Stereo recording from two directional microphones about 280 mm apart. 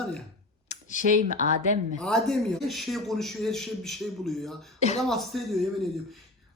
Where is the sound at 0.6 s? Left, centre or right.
Left.